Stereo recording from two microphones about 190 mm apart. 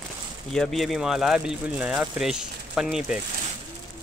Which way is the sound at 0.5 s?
Centre (ahead or behind).